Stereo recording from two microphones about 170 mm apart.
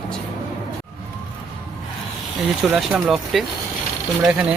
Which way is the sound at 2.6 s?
5° right (ahead or behind).